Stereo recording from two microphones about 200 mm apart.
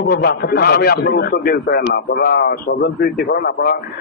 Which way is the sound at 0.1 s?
50° left (ahead or behind).